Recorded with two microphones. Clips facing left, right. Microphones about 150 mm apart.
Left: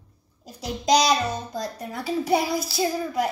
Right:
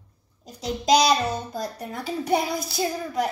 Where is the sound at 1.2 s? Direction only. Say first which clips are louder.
Right 1 dB; 25° right (ahead or behind).